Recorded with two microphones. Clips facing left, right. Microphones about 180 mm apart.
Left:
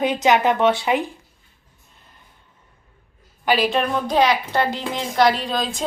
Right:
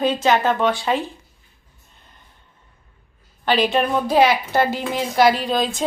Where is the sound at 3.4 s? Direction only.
5° left (ahead or behind).